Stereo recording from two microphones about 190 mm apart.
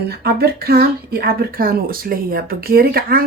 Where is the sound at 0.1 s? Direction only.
55° right (ahead or behind).